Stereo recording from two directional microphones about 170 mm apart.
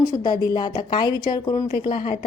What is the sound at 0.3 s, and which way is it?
Speech, 25° left (ahead or behind).